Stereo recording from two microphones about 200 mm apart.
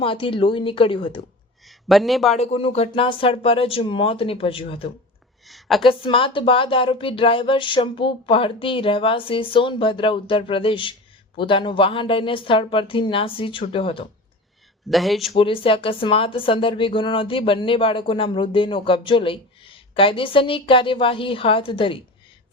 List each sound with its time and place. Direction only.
0.0 s speech: 25° left (ahead or behind)
1.6 s speech: centre (ahead or behind)
2.3 s speech: 30° left (ahead or behind)
5.5 s a woman's voice: centre (ahead or behind)
5.8 s speech: 25° left (ahead or behind)
14.8 s speech: centre (ahead or behind)
15.4 s speech: 25° left (ahead or behind)